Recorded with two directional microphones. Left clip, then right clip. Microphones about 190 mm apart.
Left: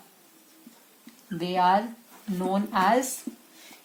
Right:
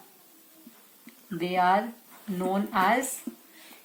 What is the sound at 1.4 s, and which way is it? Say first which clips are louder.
Speech: left 1 dB; 40° left (ahead or behind).